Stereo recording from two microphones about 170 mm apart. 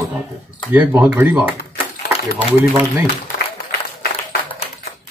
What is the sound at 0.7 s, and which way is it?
Speech, 10° right (ahead or behind).